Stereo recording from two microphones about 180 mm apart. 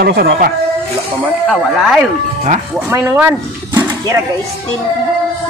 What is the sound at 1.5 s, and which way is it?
Speech, centre (ahead or behind).